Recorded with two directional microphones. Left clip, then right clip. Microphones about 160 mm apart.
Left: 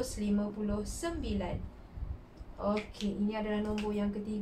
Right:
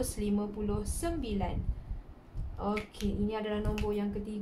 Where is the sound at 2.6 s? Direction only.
50° right (ahead or behind).